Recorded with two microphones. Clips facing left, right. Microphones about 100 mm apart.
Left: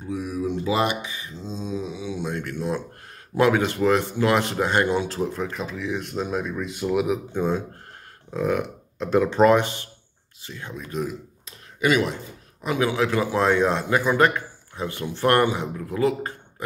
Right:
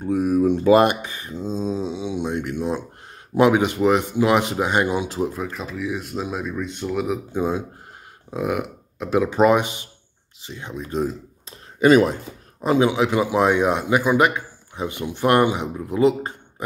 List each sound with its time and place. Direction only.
0.0 s speech: 50° right (ahead or behind)
1.7 s mantra: 30° right (ahead or behind)
3.3 s a man's voice: 15° right (ahead or behind)
5.4 s speech: centre (ahead or behind)
7.3 s a man's voice: 10° right (ahead or behind)
10.9 s speech: 30° right (ahead or behind)
12.6 s a man's voice: 25° right (ahead or behind)